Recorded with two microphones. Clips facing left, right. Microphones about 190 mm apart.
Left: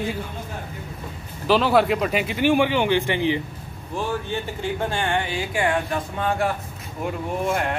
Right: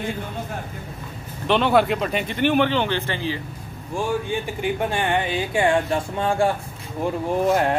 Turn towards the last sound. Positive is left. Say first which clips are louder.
# right 5 dB
turn(degrees=-30)  # may be behind; listen again after turning